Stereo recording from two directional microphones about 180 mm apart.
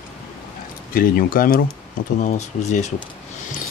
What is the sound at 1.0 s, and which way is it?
Speech, 50° left (ahead or behind).